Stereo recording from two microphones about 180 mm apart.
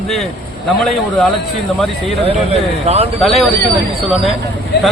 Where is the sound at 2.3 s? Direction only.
35° right (ahead or behind).